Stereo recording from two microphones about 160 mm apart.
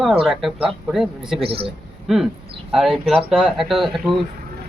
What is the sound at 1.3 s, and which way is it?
Speech, 35° right (ahead or behind).